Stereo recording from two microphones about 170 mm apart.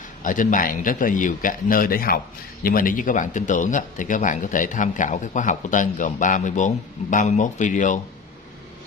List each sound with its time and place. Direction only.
0.2 s speech: 50° left (ahead or behind)